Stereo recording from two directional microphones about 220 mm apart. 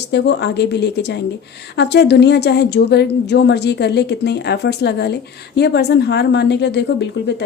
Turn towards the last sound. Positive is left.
turn(degrees=50)  # may be behind; listen again after turning